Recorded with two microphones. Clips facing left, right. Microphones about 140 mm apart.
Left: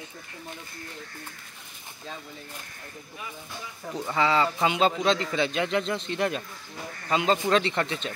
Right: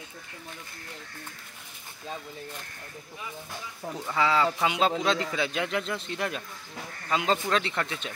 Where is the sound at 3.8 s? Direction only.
35° right (ahead or behind).